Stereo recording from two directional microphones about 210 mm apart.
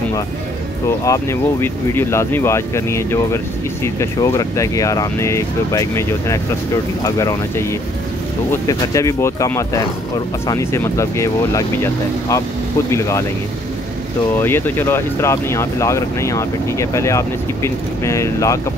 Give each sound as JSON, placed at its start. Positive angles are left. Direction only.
{"t": 0.8, "sound": "speech", "side_deg": 15}
{"t": 14.3, "sound": "speech", "side_deg": 10}